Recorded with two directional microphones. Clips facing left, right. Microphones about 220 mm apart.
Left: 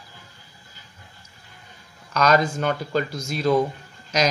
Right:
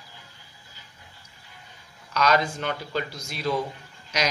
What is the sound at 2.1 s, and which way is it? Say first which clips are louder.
Speech: left 4 dB; 45° left (ahead or behind).